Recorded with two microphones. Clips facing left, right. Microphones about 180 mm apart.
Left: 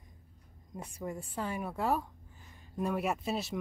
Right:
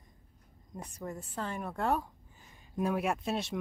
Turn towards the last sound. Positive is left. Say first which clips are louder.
# right 1 dB
turn(degrees=0)  # may be behind; listen again after turning